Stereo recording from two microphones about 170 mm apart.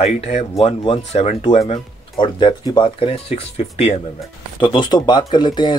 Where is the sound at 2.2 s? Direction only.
25° left (ahead or behind).